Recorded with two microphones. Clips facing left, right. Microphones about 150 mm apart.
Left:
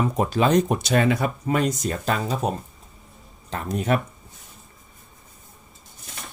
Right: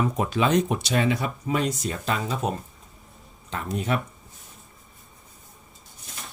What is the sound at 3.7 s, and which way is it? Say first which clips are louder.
Speech: left 4 dB; 50° left (ahead or behind).